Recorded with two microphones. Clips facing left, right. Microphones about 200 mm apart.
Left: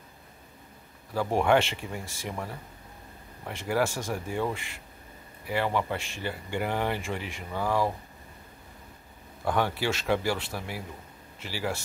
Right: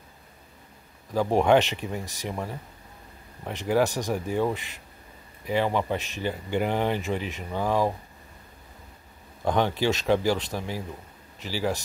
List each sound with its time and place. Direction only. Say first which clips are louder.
1.1 s speech: right 3 dB; 20° right (ahead or behind)
9.4 s speech: right 3 dB; 20° right (ahead or behind)